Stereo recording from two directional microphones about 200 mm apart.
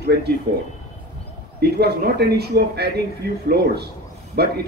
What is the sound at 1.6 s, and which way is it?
Speech, 55° right (ahead or behind).